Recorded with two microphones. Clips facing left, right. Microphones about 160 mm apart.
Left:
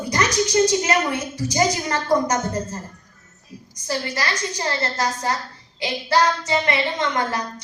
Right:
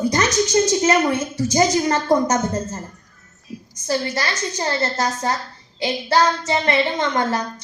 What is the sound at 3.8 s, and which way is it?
A woman's voice, 30° right (ahead or behind).